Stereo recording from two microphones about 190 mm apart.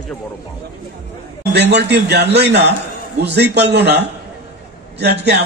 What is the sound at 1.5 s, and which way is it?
A man's voice, 65° right (ahead or behind).